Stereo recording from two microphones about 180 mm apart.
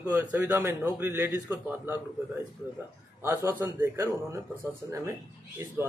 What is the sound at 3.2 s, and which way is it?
A man's voice, 10° right (ahead or behind).